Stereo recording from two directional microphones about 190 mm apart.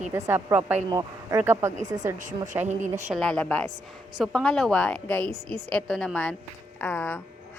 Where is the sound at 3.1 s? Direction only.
5° left (ahead or behind).